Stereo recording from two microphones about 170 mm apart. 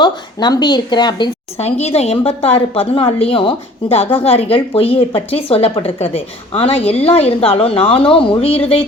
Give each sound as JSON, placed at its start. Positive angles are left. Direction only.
{"t": 0.0, "sound": "speech", "side_deg": 25}
{"t": 1.5, "sound": "a woman's voice", "side_deg": 40}